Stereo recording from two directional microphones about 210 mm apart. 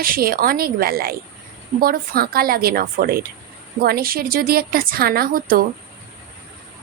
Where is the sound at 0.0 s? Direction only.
45° right (ahead or behind).